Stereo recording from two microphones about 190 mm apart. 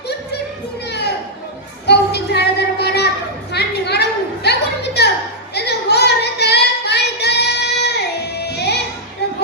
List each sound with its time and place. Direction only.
0.9 s children playing: 60° left (ahead or behind)
1.9 s music: 60° left (ahead or behind)
3.5 s a sound: 60° left (ahead or behind)
5.5 s child singing: 60° left (ahead or behind)
9.2 s children playing: 60° left (ahead or behind)